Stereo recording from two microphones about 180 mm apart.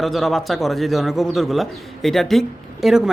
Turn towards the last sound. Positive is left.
turn(degrees=0)  # may be behind; listen again after turning